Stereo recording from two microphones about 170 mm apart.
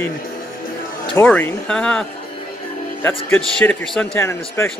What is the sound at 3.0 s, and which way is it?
A man's voice, 10° left (ahead or behind).